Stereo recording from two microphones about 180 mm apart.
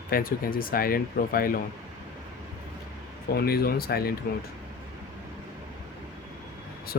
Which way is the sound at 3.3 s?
60° left (ahead or behind).